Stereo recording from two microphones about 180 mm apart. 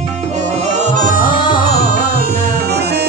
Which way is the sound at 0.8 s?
45° right (ahead or behind).